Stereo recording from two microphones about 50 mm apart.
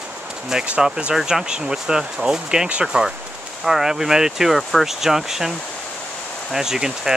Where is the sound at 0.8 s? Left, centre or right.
Centre.